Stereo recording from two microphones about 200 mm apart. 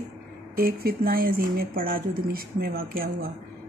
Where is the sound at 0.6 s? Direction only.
45° right (ahead or behind).